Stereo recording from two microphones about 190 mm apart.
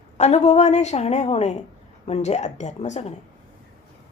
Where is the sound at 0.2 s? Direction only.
35° left (ahead or behind).